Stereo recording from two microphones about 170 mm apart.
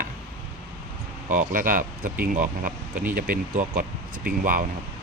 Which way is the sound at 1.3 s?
50° right (ahead or behind).